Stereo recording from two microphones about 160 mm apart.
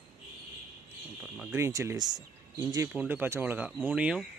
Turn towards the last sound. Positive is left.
turn(degrees=-5)  # may be behind; listen again after turning